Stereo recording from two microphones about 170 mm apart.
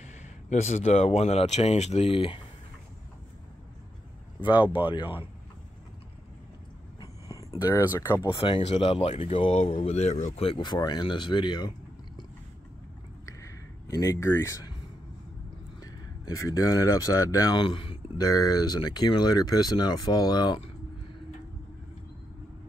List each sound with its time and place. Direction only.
0.0 s speech: 40° left (ahead or behind)
4.4 s speech: 30° left (ahead or behind)
7.0 s a sound: 20° left (ahead or behind)
8.4 s speech: 35° left (ahead or behind)
13.2 s a sound: 20° left (ahead or behind)
15.8 s speech: 20° left (ahead or behind)